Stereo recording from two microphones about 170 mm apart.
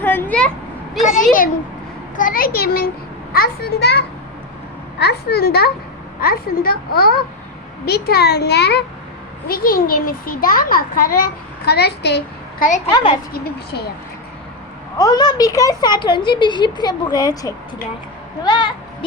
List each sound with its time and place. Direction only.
0.0 s a sound: 10° left (ahead or behind)
1.0 s a child's voice: 50° left (ahead or behind); by 8.8 s 75° left (ahead or behind)
9.5 s a child's voice: 60° left (ahead or behind); by 12.6 s 80° left
12.9 s speech: 30° left (ahead or behind)
14.9 s speech: 20° left (ahead or behind)